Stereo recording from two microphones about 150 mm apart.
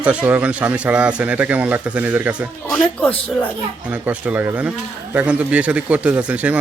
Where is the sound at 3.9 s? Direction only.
10° right (ahead or behind).